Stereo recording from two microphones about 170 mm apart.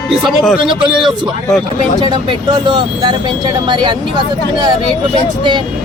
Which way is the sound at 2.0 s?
25° right (ahead or behind).